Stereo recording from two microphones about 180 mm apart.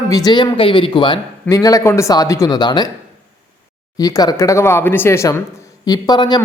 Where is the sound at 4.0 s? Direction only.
20° left (ahead or behind).